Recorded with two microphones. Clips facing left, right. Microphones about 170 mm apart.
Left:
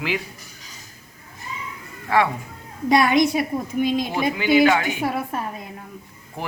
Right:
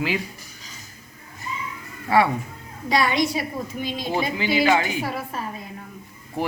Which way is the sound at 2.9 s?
50° left (ahead or behind).